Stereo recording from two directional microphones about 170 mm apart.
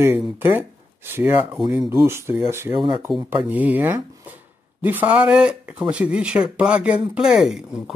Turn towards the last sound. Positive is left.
turn(degrees=0)  # may be behind; listen again after turning